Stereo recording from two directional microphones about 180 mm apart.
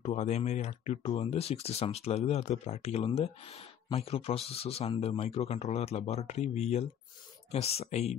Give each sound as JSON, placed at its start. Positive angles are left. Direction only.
{"t": 0.0, "sound": "speech", "side_deg": 35}